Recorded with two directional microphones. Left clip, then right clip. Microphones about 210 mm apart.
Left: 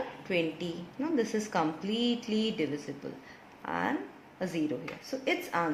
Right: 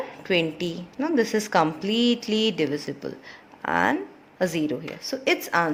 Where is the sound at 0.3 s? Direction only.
55° right (ahead or behind).